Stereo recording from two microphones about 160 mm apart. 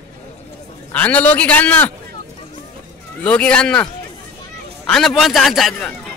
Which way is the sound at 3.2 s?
10° left (ahead or behind).